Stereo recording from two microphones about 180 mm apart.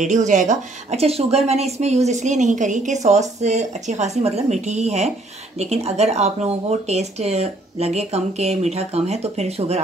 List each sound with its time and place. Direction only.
0.3 s speech: 45° right (ahead or behind)